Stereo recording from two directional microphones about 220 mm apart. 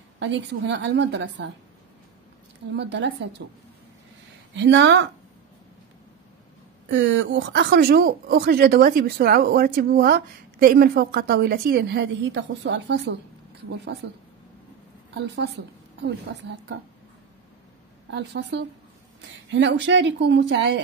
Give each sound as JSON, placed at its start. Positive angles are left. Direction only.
{"t": 0.2, "sound": "speech", "side_deg": -55}
{"t": 2.7, "sound": "speech", "side_deg": -50}
{"t": 4.6, "sound": "speech", "side_deg": -55}
{"t": 6.9, "sound": "speech", "side_deg": -55}
{"t": 18.1, "sound": "speech", "side_deg": -50}